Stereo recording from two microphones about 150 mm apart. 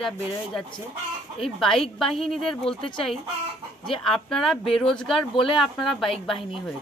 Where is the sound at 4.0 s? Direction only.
Centre (ahead or behind).